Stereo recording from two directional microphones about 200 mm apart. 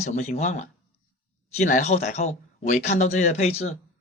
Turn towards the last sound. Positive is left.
turn(degrees=30)  # may be behind; listen again after turning